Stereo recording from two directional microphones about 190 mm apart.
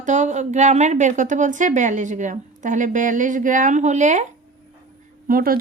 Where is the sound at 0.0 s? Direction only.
40° right (ahead or behind).